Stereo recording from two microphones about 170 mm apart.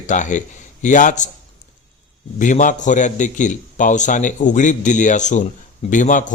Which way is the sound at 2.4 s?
50° left (ahead or behind).